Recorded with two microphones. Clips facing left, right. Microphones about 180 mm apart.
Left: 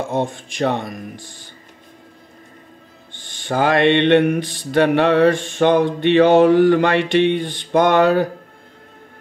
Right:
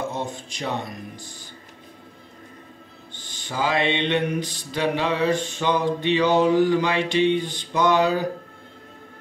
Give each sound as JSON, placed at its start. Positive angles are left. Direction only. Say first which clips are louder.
{"t": 0.1, "sound": "speech", "louder": "left 8 dB", "side_deg": 50}
{"t": 3.4, "sound": "mantra", "louder": "left 8 dB", "side_deg": 60}